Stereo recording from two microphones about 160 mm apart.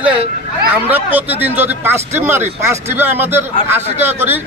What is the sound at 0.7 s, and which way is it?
Speech, 10° right (ahead or behind).